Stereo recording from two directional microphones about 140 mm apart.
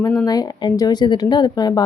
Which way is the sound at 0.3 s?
25° left (ahead or behind).